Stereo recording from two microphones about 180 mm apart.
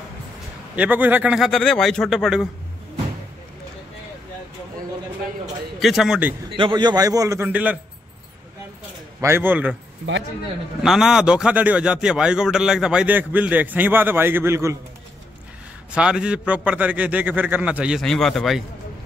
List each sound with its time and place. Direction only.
0.7 s a man's voice: 10° right (ahead or behind)
5.8 s a man's voice: centre (ahead or behind)
6.5 s a man's voice: 25° right (ahead or behind); by 7.8 s 10° right (ahead or behind)
9.2 s a man's voice: 10° right (ahead or behind)
10.8 s a man's voice: 5° right (ahead or behind)
15.9 s a man's voice: 5° right (ahead or behind)